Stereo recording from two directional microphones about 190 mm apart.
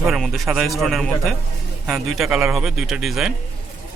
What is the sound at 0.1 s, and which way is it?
Speech, centre (ahead or behind).